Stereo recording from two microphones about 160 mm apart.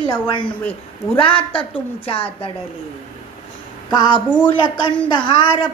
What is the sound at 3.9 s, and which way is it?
Speech, 25° left (ahead or behind).